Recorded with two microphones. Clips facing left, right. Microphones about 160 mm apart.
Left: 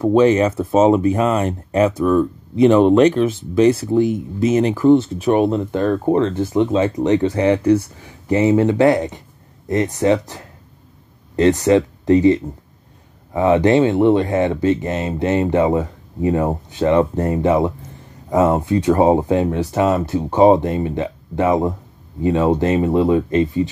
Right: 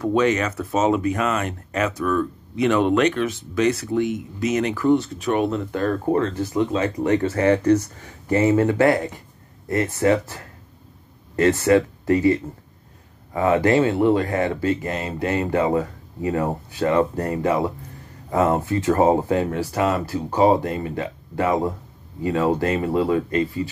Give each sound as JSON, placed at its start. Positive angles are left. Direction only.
{"t": 0.0, "sound": "speech", "side_deg": 30}